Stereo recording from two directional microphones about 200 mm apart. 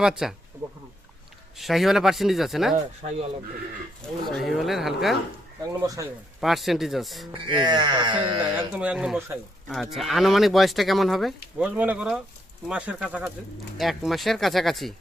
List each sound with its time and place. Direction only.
0.0 s speech: centre (ahead or behind)
1.5 s speech: centre (ahead or behind)
4.0 s speech: centre (ahead or behind)
5.7 s speech: 15° right (ahead or behind)
6.4 s speech: centre (ahead or behind)
7.4 s speech: 20° right (ahead or behind)
8.5 s speech: 5° right (ahead or behind)